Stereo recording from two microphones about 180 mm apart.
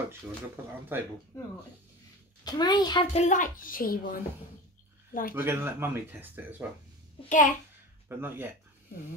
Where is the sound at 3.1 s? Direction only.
40° left (ahead or behind).